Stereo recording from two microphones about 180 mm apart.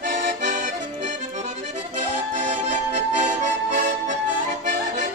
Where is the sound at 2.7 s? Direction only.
40° right (ahead or behind).